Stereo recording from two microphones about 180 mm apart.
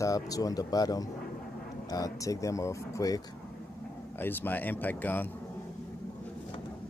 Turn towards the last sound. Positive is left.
turn(degrees=10)  # may be behind; listen again after turning